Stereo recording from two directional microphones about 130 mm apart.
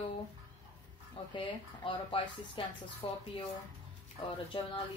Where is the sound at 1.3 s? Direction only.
40° left (ahead or behind).